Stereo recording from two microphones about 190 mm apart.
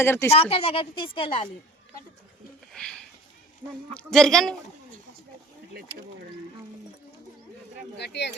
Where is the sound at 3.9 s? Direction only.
5° left (ahead or behind).